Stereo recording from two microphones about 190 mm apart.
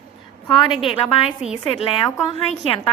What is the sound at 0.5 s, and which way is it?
Speech, 25° left (ahead or behind).